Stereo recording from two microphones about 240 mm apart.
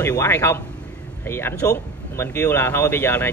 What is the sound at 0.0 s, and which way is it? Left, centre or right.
Speech, centre.